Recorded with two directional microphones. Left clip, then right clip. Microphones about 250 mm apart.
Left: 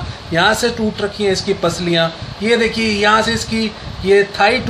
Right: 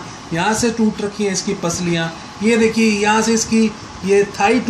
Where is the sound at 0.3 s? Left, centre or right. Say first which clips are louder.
Left 4 dB; left.